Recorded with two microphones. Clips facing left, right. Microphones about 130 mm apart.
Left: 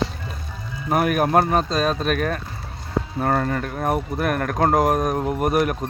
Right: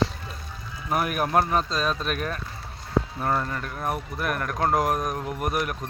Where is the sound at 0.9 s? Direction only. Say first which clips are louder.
Left 6 dB; 60° left (ahead or behind).